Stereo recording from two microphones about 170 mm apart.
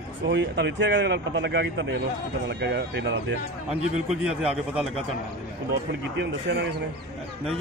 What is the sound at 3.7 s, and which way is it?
Speech, 40° right (ahead or behind).